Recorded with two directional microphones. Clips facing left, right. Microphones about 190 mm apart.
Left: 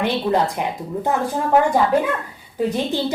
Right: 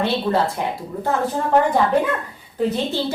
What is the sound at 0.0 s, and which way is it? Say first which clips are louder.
A woman's voice: even; 15° left (ahead or behind).